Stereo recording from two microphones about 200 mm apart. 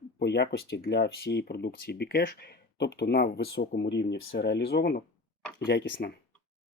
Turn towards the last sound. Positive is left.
turn(degrees=60)  # may be behind; listen again after turning